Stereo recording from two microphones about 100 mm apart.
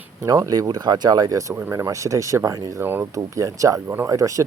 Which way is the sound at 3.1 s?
35° right (ahead or behind).